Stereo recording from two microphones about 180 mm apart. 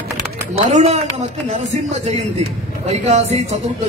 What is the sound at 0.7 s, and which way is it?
A man's voice, 40° right (ahead or behind).